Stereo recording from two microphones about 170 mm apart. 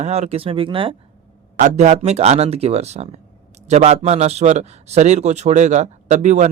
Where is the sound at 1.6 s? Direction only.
40° right (ahead or behind).